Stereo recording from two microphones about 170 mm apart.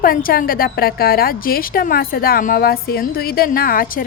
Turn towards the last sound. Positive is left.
turn(degrees=55)  # may be behind; listen again after turning